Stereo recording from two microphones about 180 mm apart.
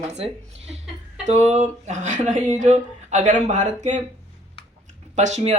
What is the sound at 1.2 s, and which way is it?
Speech, 40° right (ahead or behind).